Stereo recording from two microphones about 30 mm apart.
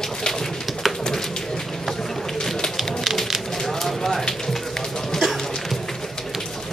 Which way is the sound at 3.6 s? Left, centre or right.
Centre.